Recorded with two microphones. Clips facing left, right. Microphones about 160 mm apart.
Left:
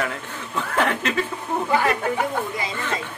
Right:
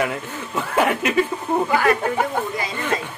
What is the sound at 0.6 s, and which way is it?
Chuckle, 10° right (ahead or behind).